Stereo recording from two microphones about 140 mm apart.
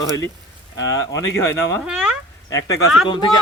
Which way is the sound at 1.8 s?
5° right (ahead or behind).